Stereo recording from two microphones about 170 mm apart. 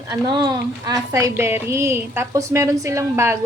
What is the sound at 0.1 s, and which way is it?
A woman's voice, 25° right (ahead or behind).